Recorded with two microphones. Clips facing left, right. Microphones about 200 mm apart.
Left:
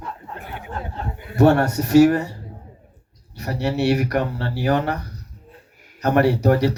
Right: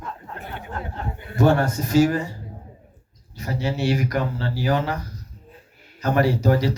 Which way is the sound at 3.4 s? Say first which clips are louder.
Left 3 dB; 65° left (ahead or behind).